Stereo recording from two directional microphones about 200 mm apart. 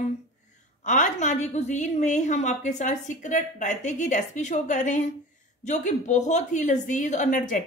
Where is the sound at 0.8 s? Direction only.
40° left (ahead or behind).